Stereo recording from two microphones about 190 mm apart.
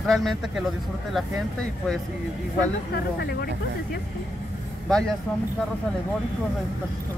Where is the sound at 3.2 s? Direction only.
60° left (ahead or behind).